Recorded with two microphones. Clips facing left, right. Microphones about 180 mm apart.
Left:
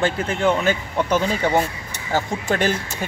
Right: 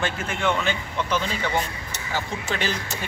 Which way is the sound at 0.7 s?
45° left (ahead or behind).